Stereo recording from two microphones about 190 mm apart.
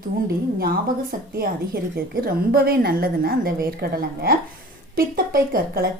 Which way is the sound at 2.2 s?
50° right (ahead or behind).